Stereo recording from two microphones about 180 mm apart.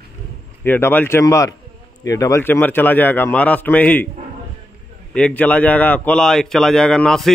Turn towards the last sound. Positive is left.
turn(degrees=5)  # may be behind; listen again after turning